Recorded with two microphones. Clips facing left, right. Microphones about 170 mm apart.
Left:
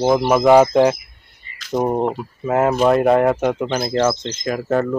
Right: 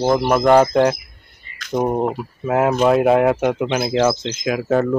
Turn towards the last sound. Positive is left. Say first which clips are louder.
# right 2 dB
turn(degrees=-5)  # may be behind; listen again after turning